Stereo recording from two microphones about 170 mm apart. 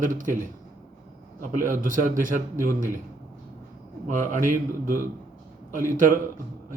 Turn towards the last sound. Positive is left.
turn(degrees=-50)  # may be behind; listen again after turning